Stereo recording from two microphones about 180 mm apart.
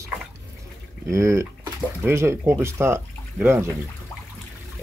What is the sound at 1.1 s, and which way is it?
Speech, 15° right (ahead or behind).